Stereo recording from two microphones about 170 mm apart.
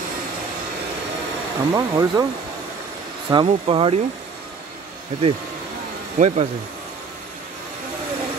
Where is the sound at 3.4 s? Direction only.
35° right (ahead or behind).